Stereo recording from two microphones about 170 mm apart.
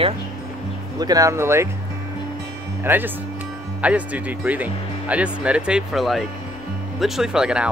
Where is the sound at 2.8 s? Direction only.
10° right (ahead or behind).